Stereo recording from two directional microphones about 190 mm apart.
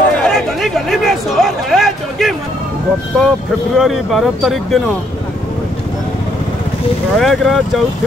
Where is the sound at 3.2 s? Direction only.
Centre (ahead or behind).